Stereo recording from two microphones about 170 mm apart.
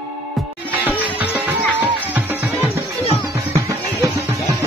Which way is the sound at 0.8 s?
10° right (ahead or behind).